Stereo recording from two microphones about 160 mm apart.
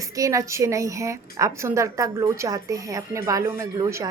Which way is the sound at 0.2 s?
20° right (ahead or behind).